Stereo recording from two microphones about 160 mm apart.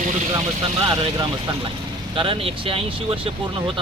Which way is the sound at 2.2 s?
35° right (ahead or behind).